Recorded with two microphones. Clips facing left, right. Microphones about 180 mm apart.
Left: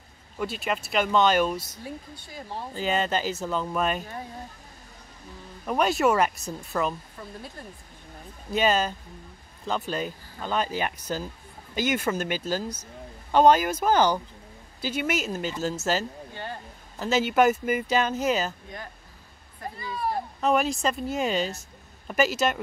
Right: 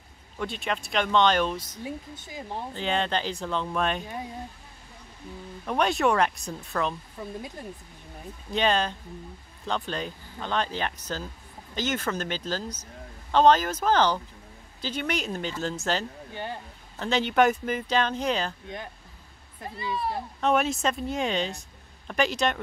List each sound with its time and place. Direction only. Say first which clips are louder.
0.4 s speech: left 2 dB; 5° left (ahead or behind)
1.9 s speech: right 2 dB; 20° right (ahead or behind)
2.7 s speech: left 2 dB; 5° left (ahead or behind)
5.7 s speech: left 1 dB; 5° left (ahead or behind)
7.2 s speech: right 4 dB; 15° right (ahead or behind)
8.5 s speech: left 1 dB; 5° left (ahead or behind)
19.8 s speech: right 2 dB; 45° left (ahead or behind)
20.3 s speech: even; centre (ahead or behind)